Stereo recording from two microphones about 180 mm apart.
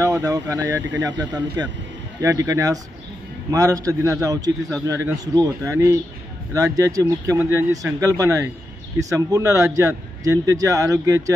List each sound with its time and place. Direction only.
0.0 s a man's voice: 20° right (ahead or behind)